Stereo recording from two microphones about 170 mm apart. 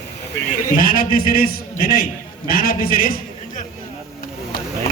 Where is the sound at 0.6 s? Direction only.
55° left (ahead or behind).